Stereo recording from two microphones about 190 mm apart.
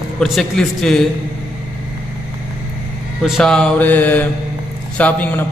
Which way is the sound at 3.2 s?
Centre (ahead or behind).